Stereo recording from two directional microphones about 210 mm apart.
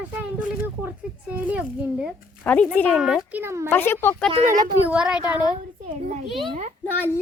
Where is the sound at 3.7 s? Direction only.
10° left (ahead or behind).